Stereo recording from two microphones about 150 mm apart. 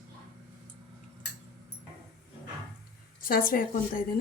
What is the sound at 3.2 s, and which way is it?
Speech, 75° left (ahead or behind).